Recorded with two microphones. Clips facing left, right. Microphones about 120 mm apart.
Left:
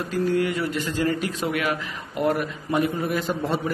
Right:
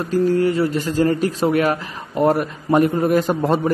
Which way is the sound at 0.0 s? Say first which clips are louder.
Right 6 dB; 35° right (ahead or behind).